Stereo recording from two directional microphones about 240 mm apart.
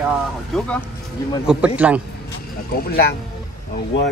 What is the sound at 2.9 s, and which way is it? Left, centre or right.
Speech, left.